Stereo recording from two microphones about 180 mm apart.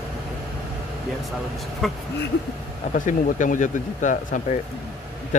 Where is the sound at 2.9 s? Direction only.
45° left (ahead or behind).